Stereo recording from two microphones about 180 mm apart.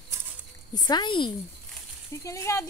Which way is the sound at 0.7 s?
25° left (ahead or behind).